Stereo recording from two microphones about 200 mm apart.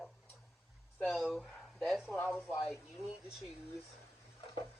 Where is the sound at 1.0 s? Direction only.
Centre (ahead or behind).